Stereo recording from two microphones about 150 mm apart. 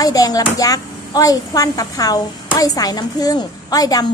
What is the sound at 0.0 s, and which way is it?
Speech, 25° left (ahead or behind).